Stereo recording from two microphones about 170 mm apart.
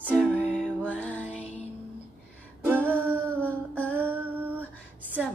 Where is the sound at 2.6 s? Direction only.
10° right (ahead or behind).